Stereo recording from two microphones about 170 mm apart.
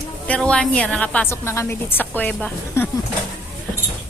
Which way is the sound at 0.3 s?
5° left (ahead or behind).